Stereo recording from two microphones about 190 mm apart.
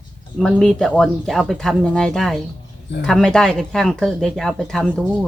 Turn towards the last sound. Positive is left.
turn(degrees=5)  # may be behind; listen again after turning